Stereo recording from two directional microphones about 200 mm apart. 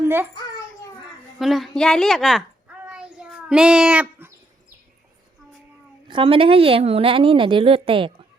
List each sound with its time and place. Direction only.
0.0 s a child's voice: 10° right (ahead or behind)
1.4 s a sound: centre (ahead or behind)
6.1 s a woman's voice: 25° right (ahead or behind)